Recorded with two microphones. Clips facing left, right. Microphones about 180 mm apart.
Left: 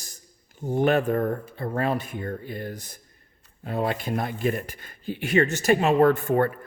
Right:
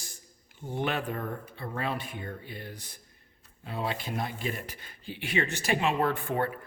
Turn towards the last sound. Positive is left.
turn(degrees=50)  # may be behind; listen again after turning